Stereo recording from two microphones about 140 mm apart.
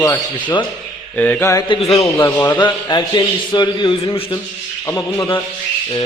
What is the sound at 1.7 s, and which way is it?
Speech, 45° left (ahead or behind).